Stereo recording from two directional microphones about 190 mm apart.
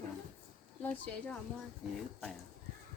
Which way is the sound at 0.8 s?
10° left (ahead or behind).